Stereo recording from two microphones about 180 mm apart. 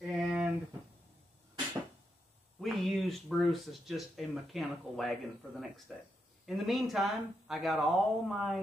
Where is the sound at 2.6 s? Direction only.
Centre (ahead or behind).